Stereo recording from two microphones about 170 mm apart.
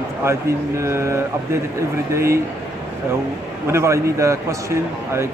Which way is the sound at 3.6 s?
15° right (ahead or behind).